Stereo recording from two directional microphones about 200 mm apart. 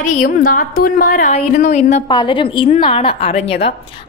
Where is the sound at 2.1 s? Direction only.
25° left (ahead or behind).